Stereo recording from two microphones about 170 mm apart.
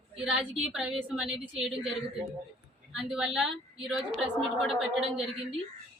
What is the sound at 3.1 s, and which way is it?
Speech, centre (ahead or behind).